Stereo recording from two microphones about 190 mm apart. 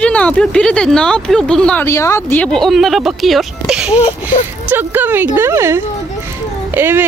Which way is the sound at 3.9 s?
30° left (ahead or behind).